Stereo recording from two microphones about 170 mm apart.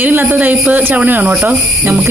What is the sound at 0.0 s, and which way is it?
Speech, 10° right (ahead or behind).